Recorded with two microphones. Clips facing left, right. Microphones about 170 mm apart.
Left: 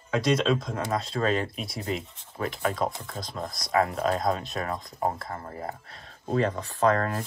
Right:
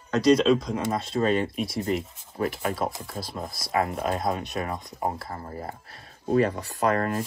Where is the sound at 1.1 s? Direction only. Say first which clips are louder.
Right 3 dB; 20° right (ahead or behind).